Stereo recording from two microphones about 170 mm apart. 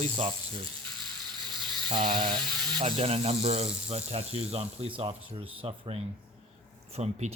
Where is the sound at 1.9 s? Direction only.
25° right (ahead or behind).